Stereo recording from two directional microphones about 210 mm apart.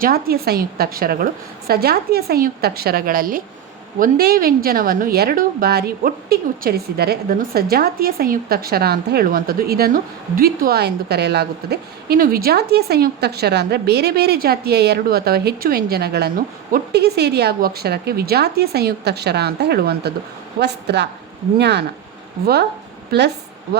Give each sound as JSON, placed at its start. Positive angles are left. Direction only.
{"t": 0.0, "sound": "a woman's voice", "side_deg": -45}